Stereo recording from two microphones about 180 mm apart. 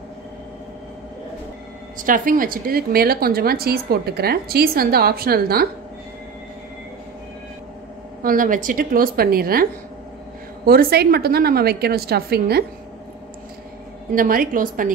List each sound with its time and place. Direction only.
2.0 s a woman's voice: 50° right (ahead or behind)
8.2 s a woman's voice: 50° right (ahead or behind)
14.1 s a woman's voice: 50° right (ahead or behind)